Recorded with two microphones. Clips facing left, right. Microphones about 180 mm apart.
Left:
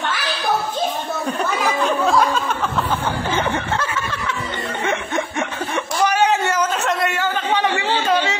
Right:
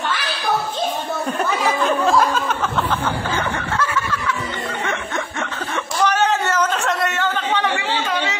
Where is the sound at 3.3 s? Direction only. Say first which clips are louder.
Left 2 dB; 20° left (ahead or behind).